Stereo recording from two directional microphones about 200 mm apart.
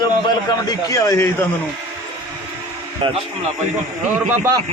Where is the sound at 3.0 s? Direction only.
25° right (ahead or behind).